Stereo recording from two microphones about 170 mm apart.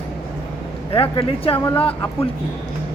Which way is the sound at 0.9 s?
30° left (ahead or behind).